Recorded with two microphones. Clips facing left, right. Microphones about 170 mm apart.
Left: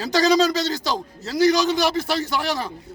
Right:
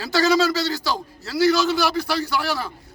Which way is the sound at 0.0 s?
15° left (ahead or behind).